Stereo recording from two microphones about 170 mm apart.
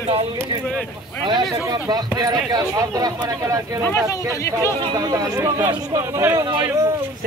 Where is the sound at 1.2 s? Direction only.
25° right (ahead or behind).